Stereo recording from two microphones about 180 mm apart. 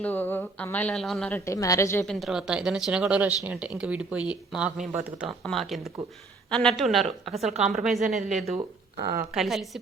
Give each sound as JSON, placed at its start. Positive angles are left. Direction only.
{"t": 0.0, "sound": "speech", "side_deg": 10}
{"t": 1.3, "sound": "speech", "side_deg": 15}
{"t": 2.0, "sound": "speech", "side_deg": 0}